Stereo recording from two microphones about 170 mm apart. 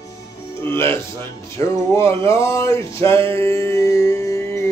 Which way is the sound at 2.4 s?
15° left (ahead or behind).